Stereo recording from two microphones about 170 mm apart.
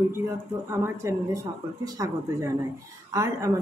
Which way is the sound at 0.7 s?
15° right (ahead or behind).